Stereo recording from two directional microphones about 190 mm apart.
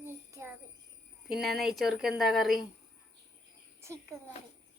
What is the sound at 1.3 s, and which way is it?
A woman's voice, centre (ahead or behind).